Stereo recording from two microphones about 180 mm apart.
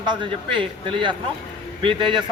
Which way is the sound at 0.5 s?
30° right (ahead or behind).